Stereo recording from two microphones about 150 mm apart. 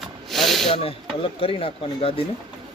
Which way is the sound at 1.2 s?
40° left (ahead or behind).